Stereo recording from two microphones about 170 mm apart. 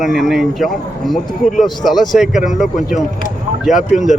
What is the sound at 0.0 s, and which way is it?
Speech, centre (ahead or behind).